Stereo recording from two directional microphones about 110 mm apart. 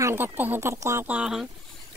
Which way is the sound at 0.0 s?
20° right (ahead or behind).